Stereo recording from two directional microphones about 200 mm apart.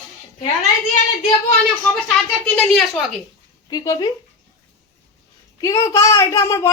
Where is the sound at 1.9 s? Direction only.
5° left (ahead or behind).